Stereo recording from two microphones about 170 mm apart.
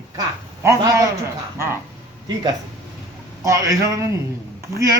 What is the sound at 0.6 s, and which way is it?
Speech, 20° right (ahead or behind).